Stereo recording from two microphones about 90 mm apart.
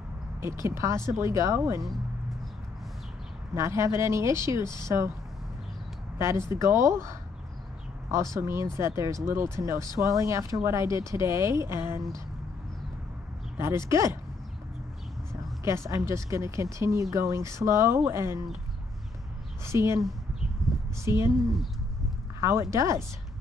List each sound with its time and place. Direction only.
0.4 s speech: 30° right (ahead or behind)
3.5 s speech: 35° right (ahead or behind)
6.1 s speech: 30° right (ahead or behind)
13.6 s speech: 30° right (ahead or behind)
15.6 s speech: 30° right (ahead or behind)
19.6 s speech: 30° right (ahead or behind)
20.6 s a sound: centre (ahead or behind)
21.0 s speech: 30° right (ahead or behind)
22.4 s speech: 30° right (ahead or behind)